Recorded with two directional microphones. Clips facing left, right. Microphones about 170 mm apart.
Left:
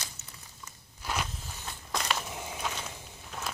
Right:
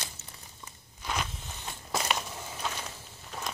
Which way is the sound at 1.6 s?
10° right (ahead or behind).